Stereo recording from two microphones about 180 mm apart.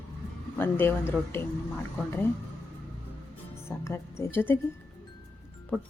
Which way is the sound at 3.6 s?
15° left (ahead or behind).